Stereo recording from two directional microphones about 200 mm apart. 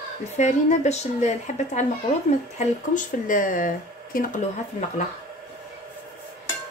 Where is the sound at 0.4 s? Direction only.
35° left (ahead or behind).